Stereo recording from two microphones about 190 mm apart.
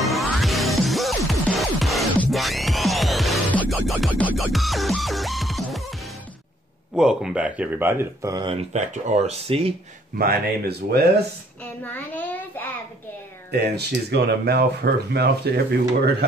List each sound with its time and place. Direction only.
0.0 s music: centre (ahead or behind)
7.0 s speech: 5° right (ahead or behind); by 8.5 s 20° right (ahead or behind)
8.5 s speech: 40° right (ahead or behind)
10.1 s speech: 55° right (ahead or behind)
11.6 s a child's voice: 10° left (ahead or behind)
13.5 s speech: 60° right (ahead or behind)